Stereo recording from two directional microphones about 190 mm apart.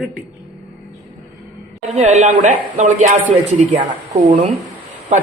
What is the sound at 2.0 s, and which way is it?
A man's voice, 35° right (ahead or behind).